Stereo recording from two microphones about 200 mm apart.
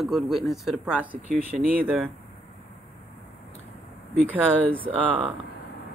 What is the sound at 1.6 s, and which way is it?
Speech, 45° right (ahead or behind).